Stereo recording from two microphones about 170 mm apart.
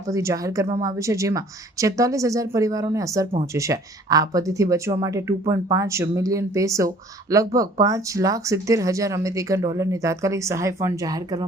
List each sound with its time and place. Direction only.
0.1 s speech: 20° right (ahead or behind)